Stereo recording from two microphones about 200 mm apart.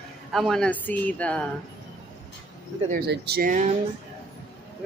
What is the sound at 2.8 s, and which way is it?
Speech, 50° right (ahead or behind).